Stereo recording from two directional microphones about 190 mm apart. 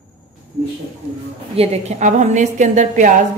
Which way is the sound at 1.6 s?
35° right (ahead or behind).